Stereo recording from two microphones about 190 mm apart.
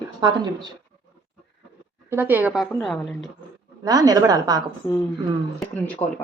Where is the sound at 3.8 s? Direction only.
20° right (ahead or behind).